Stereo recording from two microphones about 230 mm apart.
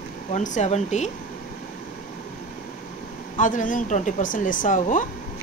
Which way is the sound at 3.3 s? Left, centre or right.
Left.